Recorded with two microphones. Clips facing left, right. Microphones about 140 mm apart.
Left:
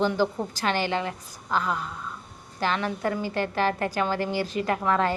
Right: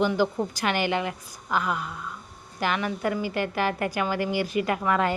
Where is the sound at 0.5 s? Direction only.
15° right (ahead or behind).